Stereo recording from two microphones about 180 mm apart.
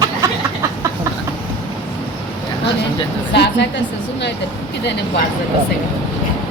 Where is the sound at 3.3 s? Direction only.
70° left (ahead or behind).